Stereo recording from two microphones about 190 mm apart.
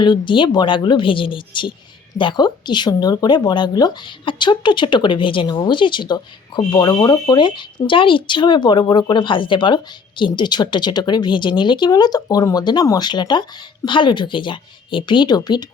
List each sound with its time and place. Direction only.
0.0 s speech: 25° left (ahead or behind)